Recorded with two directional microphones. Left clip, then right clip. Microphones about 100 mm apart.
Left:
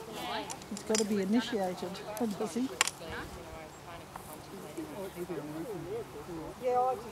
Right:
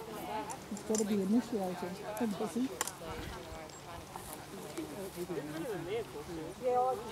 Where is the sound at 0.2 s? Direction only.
20° left (ahead or behind).